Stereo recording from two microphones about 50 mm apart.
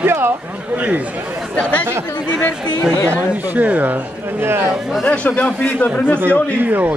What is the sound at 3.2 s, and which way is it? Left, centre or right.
Speech, right.